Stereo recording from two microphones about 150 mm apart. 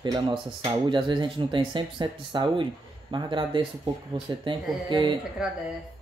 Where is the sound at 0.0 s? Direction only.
30° right (ahead or behind).